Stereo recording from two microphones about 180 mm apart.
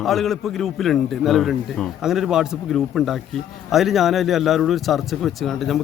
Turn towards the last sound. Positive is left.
turn(degrees=0)  # may be behind; listen again after turning